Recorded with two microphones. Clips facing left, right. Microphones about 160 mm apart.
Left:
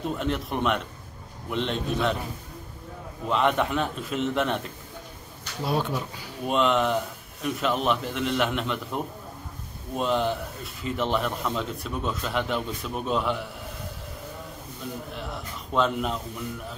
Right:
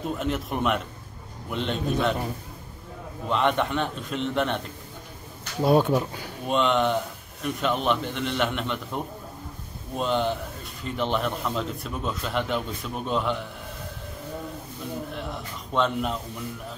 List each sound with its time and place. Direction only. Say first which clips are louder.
0.0 s a man's voice: even; centre (ahead or behind)
3.3 s a man's voice: even; centre (ahead or behind)
5.7 s speech: right 7 dB; 50° right (ahead or behind)
6.4 s a man's voice: even; centre (ahead or behind)
15.1 s speech: right 1 dB; centre (ahead or behind)